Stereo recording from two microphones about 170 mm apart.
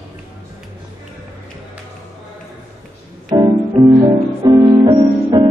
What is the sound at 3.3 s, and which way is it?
Music, 25° right (ahead or behind).